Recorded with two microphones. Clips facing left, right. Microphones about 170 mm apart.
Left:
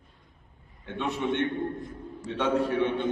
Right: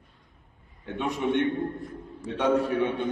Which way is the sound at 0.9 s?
10° right (ahead or behind).